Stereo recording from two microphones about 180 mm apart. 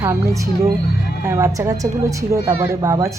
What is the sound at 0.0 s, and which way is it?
A woman's voice, 15° right (ahead or behind).